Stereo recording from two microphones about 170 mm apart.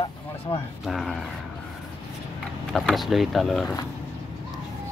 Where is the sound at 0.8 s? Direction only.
Centre (ahead or behind).